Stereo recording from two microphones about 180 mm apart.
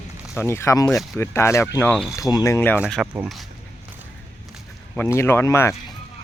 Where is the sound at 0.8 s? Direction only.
Centre (ahead or behind).